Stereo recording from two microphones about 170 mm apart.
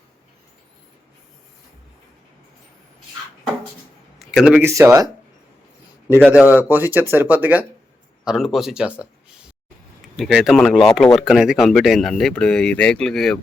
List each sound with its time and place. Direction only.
4.2 s a sound: 5° right (ahead or behind)
4.6 s speech: 15° right (ahead or behind)
6.1 s speech: 5° right (ahead or behind)
10.2 s speech: centre (ahead or behind)